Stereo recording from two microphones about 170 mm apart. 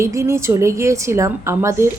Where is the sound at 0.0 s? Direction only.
15° right (ahead or behind).